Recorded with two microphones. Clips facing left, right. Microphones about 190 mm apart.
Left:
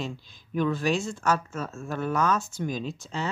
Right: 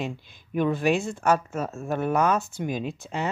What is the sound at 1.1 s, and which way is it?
Speech, 20° right (ahead or behind).